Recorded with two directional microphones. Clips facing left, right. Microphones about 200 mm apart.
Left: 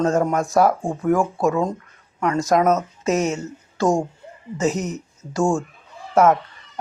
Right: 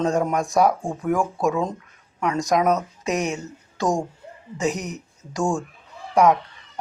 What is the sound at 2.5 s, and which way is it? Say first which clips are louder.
Speech: left 2 dB; centre (ahead or behind).